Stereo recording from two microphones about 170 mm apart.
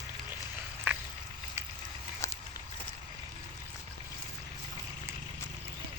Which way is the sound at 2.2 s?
15° left (ahead or behind).